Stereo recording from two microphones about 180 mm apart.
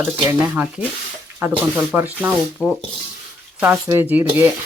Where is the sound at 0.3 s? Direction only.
5° right (ahead or behind).